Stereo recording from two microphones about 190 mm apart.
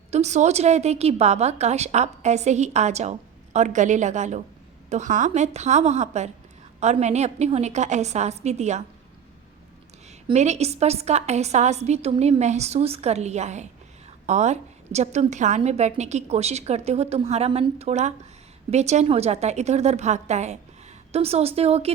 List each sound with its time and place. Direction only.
0.1 s a woman's voice: 35° right (ahead or behind)
10.2 s a woman's voice: 35° right (ahead or behind)